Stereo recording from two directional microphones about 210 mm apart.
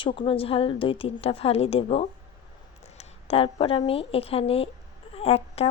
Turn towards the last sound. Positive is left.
turn(degrees=30)  # may be behind; listen again after turning